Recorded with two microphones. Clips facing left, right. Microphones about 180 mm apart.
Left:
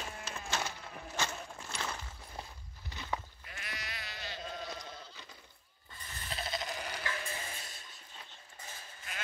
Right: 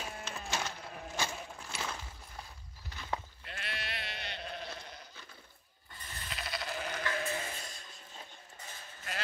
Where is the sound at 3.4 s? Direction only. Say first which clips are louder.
Right 4 dB; 70° right (ahead or behind).